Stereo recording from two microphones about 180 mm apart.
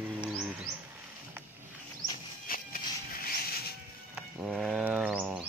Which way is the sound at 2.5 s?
55° left (ahead or behind).